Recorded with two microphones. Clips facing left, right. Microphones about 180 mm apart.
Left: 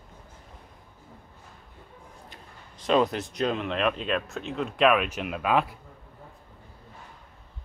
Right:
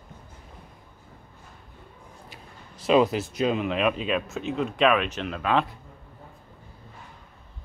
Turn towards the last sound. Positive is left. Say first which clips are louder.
# even
turn(degrees=10)  # may be behind; listen again after turning